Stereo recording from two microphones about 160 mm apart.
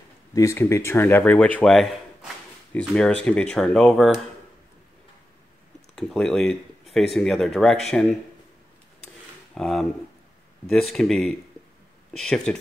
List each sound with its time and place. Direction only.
0.3 s speech: 20° left (ahead or behind); by 4.1 s 5° left (ahead or behind)
5.9 s speech: 5° left (ahead or behind)
9.5 s speech: centre (ahead or behind)